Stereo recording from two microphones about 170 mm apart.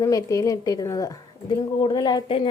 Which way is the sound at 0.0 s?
20° left (ahead or behind).